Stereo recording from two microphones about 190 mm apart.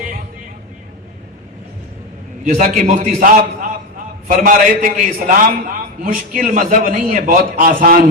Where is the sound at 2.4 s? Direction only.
40° right (ahead or behind).